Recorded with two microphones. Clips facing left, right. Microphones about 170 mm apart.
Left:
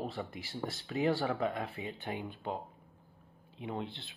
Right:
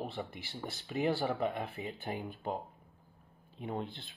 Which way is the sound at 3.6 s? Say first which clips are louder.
Even; 45° right (ahead or behind).